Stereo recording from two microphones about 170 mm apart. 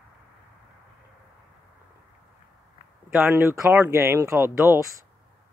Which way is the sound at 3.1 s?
10° right (ahead or behind).